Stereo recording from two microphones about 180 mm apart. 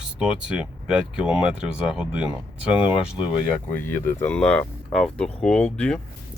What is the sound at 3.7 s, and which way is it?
Speech, 15° left (ahead or behind).